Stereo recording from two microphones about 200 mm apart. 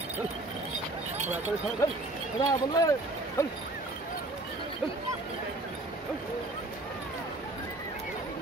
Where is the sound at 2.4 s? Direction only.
20° left (ahead or behind).